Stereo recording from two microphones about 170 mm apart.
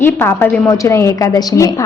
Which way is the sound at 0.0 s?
15° left (ahead or behind).